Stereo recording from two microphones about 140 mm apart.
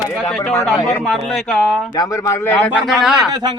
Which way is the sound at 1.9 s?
25° left (ahead or behind).